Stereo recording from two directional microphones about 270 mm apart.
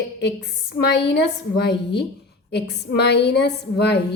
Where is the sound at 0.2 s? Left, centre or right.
Left.